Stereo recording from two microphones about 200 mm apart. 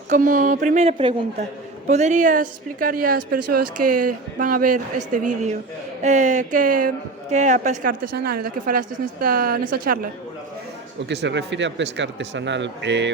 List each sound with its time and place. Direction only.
0.1 s a woman's voice: 40° right (ahead or behind)
8.1 s a woman's voice: 50° right (ahead or behind)
11.1 s speech: 60° right (ahead or behind)